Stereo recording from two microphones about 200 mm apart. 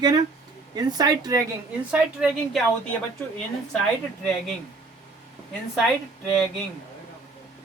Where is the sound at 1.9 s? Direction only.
5° right (ahead or behind).